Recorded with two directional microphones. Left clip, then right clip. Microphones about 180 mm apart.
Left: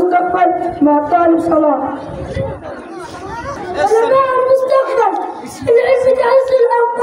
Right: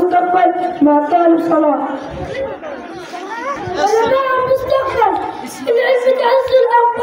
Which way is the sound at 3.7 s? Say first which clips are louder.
Left 2 dB; 40° left (ahead or behind).